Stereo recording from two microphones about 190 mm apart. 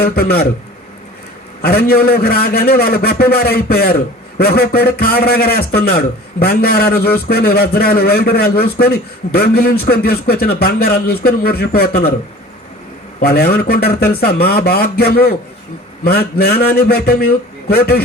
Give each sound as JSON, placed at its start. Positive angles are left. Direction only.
{"t": 0.0, "sound": "a man's voice", "side_deg": 55}
{"t": 1.6, "sound": "a man's voice", "side_deg": 55}
{"t": 13.1, "sound": "a man's voice", "side_deg": 55}